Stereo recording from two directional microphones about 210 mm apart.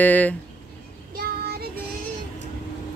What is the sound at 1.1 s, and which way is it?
Child singing, 45° right (ahead or behind).